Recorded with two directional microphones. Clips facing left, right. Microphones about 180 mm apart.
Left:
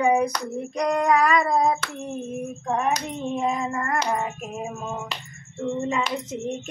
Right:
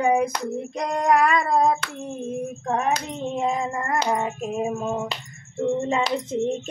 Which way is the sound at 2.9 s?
25° right (ahead or behind).